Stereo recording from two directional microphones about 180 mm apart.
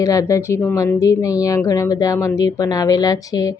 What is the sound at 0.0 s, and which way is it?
Speech, 20° left (ahead or behind).